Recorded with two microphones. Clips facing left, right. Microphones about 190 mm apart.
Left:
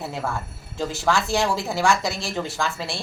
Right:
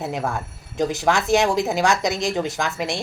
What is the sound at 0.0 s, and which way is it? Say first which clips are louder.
Speech: right 3 dB; 20° right (ahead or behind).